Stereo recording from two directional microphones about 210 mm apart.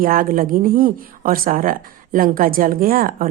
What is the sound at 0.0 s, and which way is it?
Speech, 45° right (ahead or behind).